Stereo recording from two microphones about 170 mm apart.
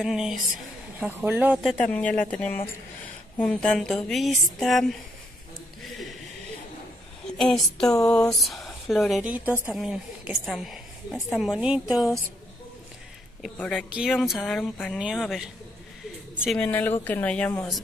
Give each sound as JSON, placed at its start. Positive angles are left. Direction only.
{"t": 0.0, "sound": "speech", "side_deg": 0}
{"t": 1.9, "sound": "speech", "side_deg": 5}
{"t": 5.8, "sound": "a sound", "side_deg": 0}
{"t": 7.3, "sound": "speech", "side_deg": 5}
{"t": 7.8, "sound": "a sound", "side_deg": 20}
{"t": 8.1, "sound": "speech", "side_deg": 5}
{"t": 13.4, "sound": "speech", "side_deg": 5}
{"t": 16.5, "sound": "speech", "side_deg": 10}